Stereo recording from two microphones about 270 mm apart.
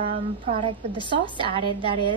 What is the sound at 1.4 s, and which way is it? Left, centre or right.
Speech, centre.